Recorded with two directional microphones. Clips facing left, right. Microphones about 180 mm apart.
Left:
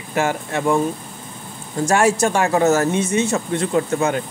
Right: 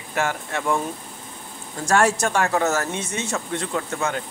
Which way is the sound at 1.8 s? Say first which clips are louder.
Left 3 dB; 5° left (ahead or behind).